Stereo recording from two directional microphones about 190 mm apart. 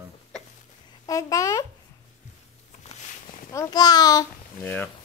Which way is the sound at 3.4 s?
20° left (ahead or behind).